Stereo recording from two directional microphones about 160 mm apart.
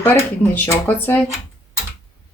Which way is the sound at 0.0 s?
15° left (ahead or behind).